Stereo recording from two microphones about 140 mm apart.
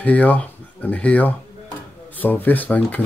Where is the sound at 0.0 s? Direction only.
10° left (ahead or behind).